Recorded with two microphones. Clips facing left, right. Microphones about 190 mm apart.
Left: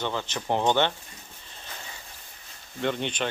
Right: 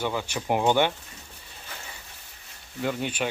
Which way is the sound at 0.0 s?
10° right (ahead or behind).